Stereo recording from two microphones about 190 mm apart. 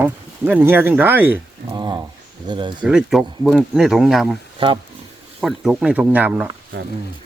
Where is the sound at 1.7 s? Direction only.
25° right (ahead or behind).